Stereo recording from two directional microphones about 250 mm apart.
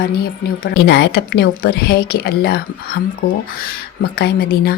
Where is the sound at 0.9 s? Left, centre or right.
Left.